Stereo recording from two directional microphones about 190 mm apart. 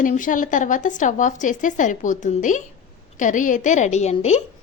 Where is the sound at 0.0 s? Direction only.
45° left (ahead or behind).